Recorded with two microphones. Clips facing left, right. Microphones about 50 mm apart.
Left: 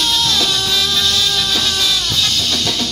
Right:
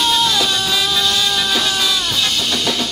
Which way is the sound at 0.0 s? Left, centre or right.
Centre.